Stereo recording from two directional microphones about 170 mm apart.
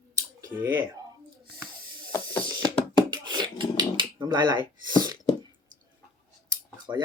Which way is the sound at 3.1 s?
25° right (ahead or behind).